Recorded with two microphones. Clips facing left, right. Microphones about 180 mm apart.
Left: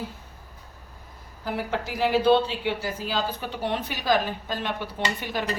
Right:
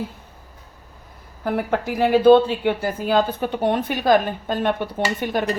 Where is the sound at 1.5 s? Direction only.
55° right (ahead or behind).